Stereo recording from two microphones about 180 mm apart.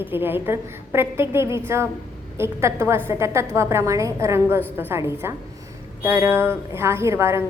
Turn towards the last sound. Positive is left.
turn(degrees=-15)  # may be behind; listen again after turning